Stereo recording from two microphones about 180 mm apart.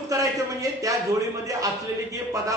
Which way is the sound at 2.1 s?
20° right (ahead or behind).